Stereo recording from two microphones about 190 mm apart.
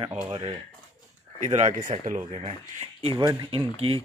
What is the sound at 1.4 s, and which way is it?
Speech, 40° right (ahead or behind).